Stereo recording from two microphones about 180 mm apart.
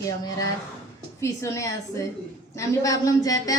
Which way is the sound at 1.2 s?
15° left (ahead or behind).